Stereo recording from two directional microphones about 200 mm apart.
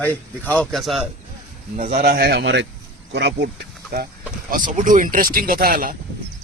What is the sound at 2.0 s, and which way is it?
A man's voice, 50° right (ahead or behind).